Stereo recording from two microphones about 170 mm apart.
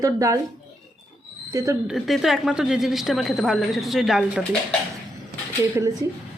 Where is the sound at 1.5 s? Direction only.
15° right (ahead or behind).